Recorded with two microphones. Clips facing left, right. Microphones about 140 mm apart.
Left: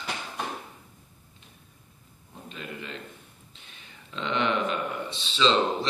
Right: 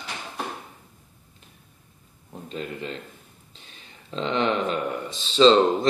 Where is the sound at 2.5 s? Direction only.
35° right (ahead or behind).